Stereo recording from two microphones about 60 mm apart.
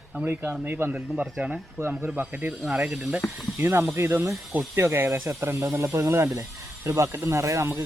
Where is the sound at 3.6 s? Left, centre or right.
Right.